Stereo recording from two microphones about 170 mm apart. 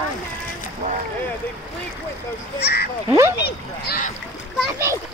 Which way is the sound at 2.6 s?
65° left (ahead or behind).